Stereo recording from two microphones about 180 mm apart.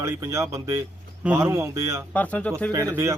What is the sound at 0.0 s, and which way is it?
Speech, 15° right (ahead or behind).